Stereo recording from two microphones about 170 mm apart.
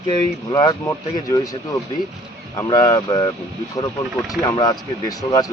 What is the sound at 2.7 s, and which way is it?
Speech, 20° left (ahead or behind).